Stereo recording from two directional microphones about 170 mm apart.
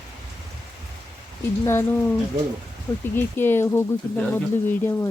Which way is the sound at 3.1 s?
15° left (ahead or behind).